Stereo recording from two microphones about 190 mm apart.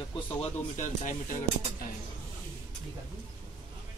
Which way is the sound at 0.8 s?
45° left (ahead or behind).